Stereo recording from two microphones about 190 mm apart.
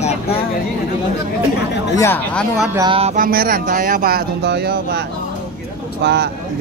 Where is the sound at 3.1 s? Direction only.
50° right (ahead or behind).